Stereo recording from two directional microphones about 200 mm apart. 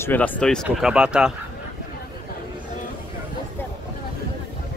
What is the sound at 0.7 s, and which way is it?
Speech, 5° right (ahead or behind).